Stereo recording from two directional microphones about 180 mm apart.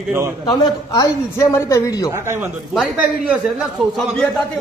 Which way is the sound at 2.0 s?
15° right (ahead or behind).